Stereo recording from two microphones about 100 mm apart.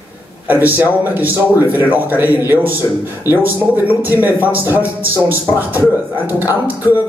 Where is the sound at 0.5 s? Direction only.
20° right (ahead or behind).